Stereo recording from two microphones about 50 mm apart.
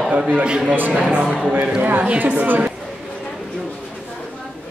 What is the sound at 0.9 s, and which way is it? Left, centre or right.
A man's voice, centre.